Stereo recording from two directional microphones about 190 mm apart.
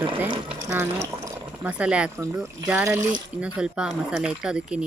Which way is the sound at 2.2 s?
15° right (ahead or behind).